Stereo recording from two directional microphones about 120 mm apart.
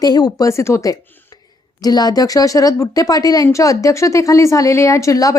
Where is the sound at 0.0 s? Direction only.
30° left (ahead or behind).